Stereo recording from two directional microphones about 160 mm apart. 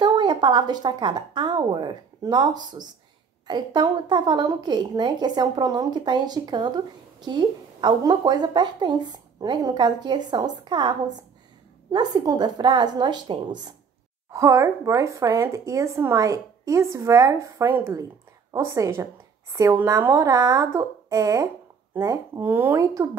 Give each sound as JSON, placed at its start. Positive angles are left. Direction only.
{"t": 0.0, "sound": "a woman's voice", "side_deg": -25}